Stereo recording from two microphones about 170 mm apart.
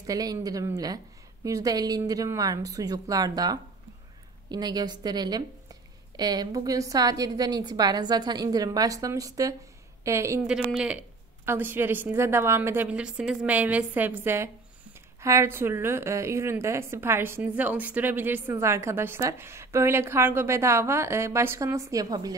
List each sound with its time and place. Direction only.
0.0 s a woman's voice: 20° right (ahead or behind)
10.4 s a woman's voice: 5° right (ahead or behind); by 22.3 s 20° right (ahead or behind)